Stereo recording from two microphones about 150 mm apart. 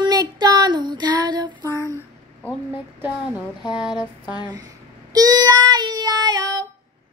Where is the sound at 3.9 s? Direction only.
30° left (ahead or behind).